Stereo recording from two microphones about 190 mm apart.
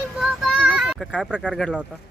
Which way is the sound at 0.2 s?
5° right (ahead or behind).